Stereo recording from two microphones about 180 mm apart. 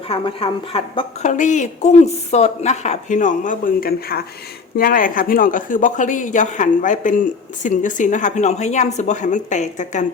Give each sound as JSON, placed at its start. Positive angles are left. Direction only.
{"t": 0.1, "sound": "a woman's voice", "side_deg": 30}